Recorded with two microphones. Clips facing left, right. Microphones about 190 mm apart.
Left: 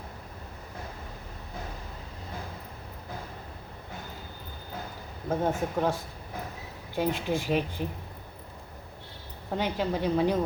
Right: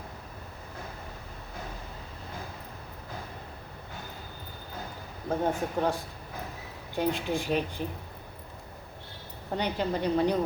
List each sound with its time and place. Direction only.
5.3 s a woman's voice: 5° left (ahead or behind)
6.9 s a woman's voice: 5° left (ahead or behind)
9.5 s a woman's voice: centre (ahead or behind)